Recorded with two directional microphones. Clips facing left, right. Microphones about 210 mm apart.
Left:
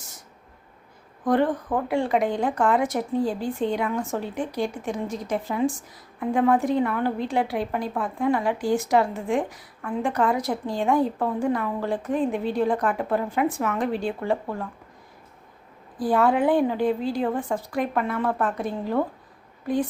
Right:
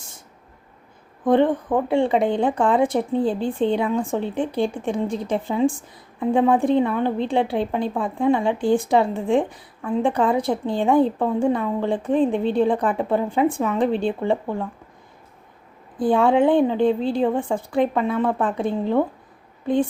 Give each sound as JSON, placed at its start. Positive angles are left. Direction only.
{"t": 1.2, "sound": "a woman's voice", "side_deg": -25}
{"t": 16.0, "sound": "speech", "side_deg": -25}